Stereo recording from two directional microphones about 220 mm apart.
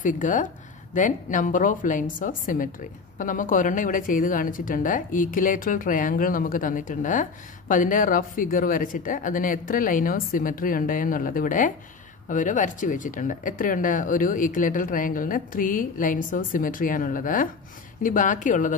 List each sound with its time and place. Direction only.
0.0 s a woman's voice: 35° left (ahead or behind)